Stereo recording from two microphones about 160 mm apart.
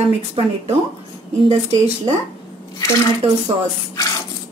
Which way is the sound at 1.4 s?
45° right (ahead or behind).